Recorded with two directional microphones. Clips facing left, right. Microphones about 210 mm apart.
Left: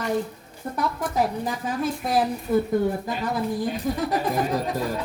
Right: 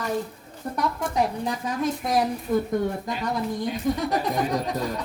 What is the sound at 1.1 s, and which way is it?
A woman's voice, 5° left (ahead or behind).